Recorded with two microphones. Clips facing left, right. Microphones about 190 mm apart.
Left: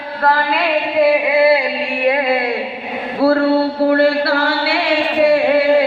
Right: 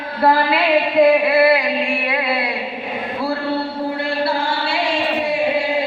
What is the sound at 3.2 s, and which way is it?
Mantra, 65° left (ahead or behind).